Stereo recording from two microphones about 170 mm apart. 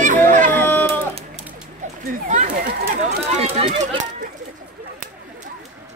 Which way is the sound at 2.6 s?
70° right (ahead or behind).